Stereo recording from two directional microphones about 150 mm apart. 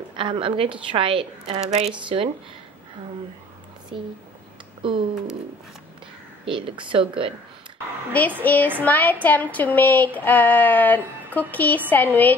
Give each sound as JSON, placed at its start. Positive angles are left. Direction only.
{"t": 0.2, "sound": "a woman's voice", "side_deg": -35}
{"t": 2.0, "sound": "a woman's voice", "side_deg": -35}
{"t": 3.9, "sound": "a woman's voice", "side_deg": -35}
{"t": 6.4, "sound": "a woman's voice", "side_deg": -35}
{"t": 8.1, "sound": "a sound", "side_deg": 10}